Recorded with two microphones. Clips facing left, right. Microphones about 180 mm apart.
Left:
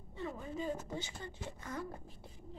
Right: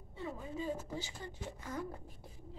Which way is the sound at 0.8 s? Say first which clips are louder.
Even; 35° right (ahead or behind).